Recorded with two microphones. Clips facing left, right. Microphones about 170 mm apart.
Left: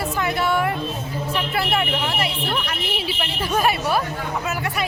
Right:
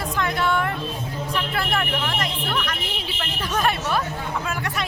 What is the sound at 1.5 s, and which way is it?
Vehicle, 5° left (ahead or behind).